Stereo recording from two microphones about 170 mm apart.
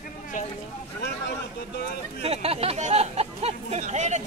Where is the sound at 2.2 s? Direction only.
35° right (ahead or behind).